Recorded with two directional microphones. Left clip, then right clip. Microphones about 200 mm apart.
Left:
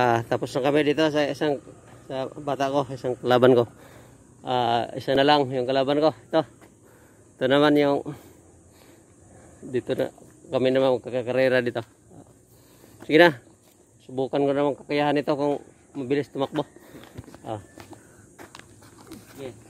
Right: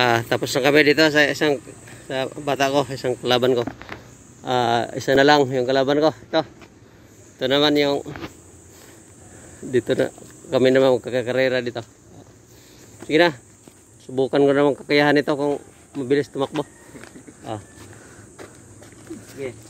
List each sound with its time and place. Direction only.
0.0 s speech: 20° left (ahead or behind)
3.2 s speech: 35° left (ahead or behind)
4.4 s speech: 5° left (ahead or behind)
7.3 s speech: 45° left (ahead or behind)
9.7 s speech: 5° right (ahead or behind)
11.5 s speech: 50° left (ahead or behind)
13.1 s speech: 50° left (ahead or behind)
14.0 s speech: 5° right (ahead or behind)
15.2 s speech: 30° left (ahead or behind)
16.0 s speech: 10° left (ahead or behind)